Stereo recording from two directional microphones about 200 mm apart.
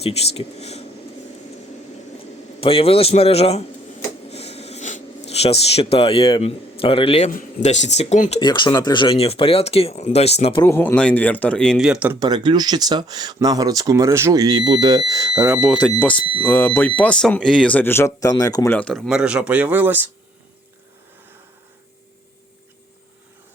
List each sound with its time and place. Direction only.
0.0 s speech: 30° left (ahead or behind)
2.6 s speech: 30° left (ahead or behind)
4.3 s writing: 30° left (ahead or behind)
7.3 s speech: 40° left (ahead or behind)
8.4 s speech: 20° left (ahead or behind)
10.6 s a man's voice: 10° left (ahead or behind); by 12.1 s 5° right (ahead or behind)
12.2 s speech: 20° right (ahead or behind)
15.3 s a man's voice: 5° right (ahead or behind)
15.7 s speech: 5° left (ahead or behind); by 20.1 s 10° right (ahead or behind)